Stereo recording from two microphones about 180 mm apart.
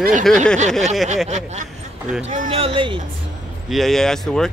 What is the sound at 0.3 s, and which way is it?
Speech, centre (ahead or behind).